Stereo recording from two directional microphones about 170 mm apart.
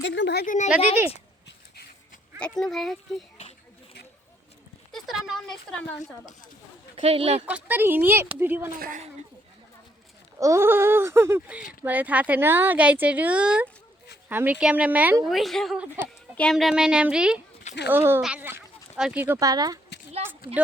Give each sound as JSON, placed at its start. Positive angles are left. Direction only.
{"t": 0.0, "sound": "a woman's voice", "side_deg": 85}
{"t": 0.4, "sound": "a woman's voice", "side_deg": 45}
{"t": 2.4, "sound": "speech", "side_deg": 5}
{"t": 4.9, "sound": "speech", "side_deg": 0}
{"t": 6.9, "sound": "speech", "side_deg": -35}
{"t": 7.4, "sound": "speech", "side_deg": -10}
{"t": 10.4, "sound": "speech", "side_deg": -15}